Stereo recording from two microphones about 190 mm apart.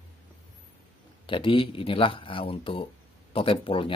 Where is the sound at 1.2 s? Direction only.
25° left (ahead or behind).